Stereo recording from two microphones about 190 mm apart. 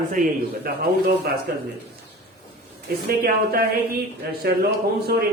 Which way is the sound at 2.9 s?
50° right (ahead or behind).